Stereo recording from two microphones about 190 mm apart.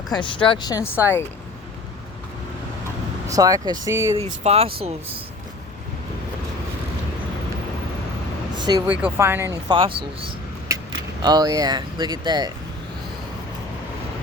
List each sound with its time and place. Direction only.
0.1 s speech: 25° left (ahead or behind)
3.2 s speech: 20° right (ahead or behind)
4.4 s speech: 30° right (ahead or behind)
8.5 s vehicle: 20° right (ahead or behind)
8.9 s speech: 10° right (ahead or behind)
9.6 s speech: 25° right (ahead or behind)